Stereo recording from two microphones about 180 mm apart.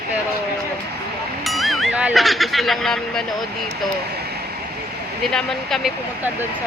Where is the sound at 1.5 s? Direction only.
Centre (ahead or behind).